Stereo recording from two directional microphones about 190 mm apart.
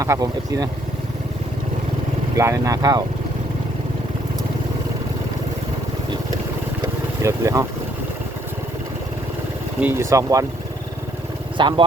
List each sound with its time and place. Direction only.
0.0 s speech: 15° right (ahead or behind)
2.3 s speech: 15° right (ahead or behind)
7.2 s speech: 15° right (ahead or behind)
9.8 s speech: 15° right (ahead or behind)
11.6 s speech: 25° right (ahead or behind)